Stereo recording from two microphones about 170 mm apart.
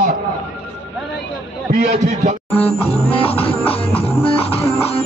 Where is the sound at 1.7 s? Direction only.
45° right (ahead or behind).